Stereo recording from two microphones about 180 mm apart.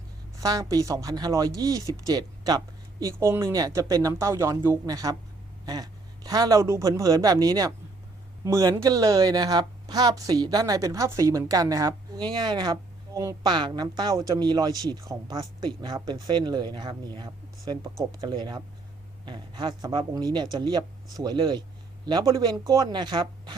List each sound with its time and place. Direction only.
0.3 s speech: 20° right (ahead or behind)